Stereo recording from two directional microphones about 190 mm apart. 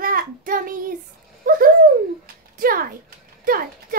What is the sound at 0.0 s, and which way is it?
Child singing, 45° right (ahead or behind).